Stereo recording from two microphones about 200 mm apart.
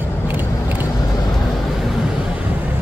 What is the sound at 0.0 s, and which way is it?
Vehicle, 10° right (ahead or behind).